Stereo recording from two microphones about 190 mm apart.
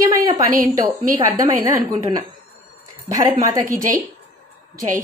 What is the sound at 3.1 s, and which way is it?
Speech, 20° right (ahead or behind).